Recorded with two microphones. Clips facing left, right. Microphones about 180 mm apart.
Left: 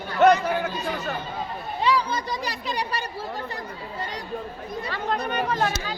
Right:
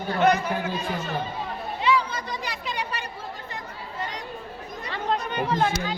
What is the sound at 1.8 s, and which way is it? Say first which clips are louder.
Speech: left 1 dB; 35° left (ahead or behind).